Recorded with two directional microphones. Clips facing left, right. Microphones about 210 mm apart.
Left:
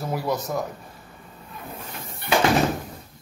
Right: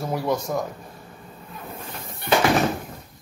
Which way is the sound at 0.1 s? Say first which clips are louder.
Right 2 dB; centre (ahead or behind).